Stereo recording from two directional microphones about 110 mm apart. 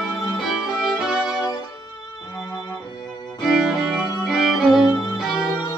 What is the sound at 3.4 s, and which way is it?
Music, centre (ahead or behind).